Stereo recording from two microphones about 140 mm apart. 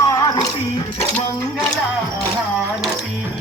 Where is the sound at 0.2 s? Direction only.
30° left (ahead or behind).